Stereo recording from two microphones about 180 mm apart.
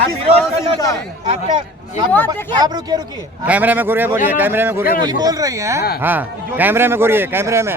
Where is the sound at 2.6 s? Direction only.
20° right (ahead or behind).